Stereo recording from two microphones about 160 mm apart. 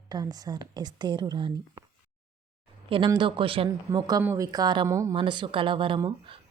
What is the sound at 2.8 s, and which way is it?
Speech, 35° right (ahead or behind).